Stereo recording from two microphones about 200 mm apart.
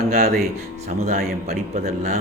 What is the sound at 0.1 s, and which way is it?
Speech, 50° right (ahead or behind).